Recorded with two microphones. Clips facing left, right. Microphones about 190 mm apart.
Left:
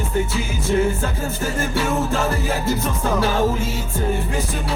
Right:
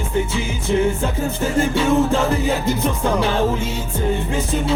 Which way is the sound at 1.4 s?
20° right (ahead or behind).